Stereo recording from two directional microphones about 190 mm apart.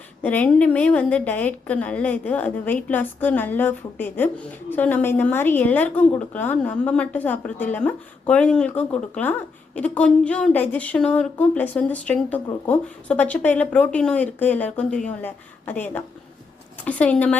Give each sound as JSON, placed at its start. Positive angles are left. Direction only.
{"t": 0.2, "sound": "a woman's voice", "side_deg": 10}